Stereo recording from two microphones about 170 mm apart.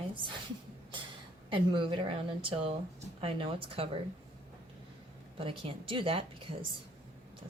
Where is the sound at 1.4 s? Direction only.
30° right (ahead or behind).